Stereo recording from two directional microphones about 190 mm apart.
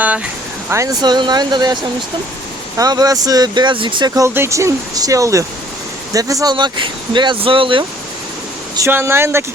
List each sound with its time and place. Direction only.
0.7 s speech: 20° right (ahead or behind)
8.7 s speech: 15° right (ahead or behind)